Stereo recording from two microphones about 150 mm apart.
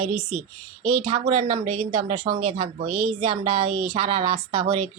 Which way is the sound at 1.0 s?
35° right (ahead or behind).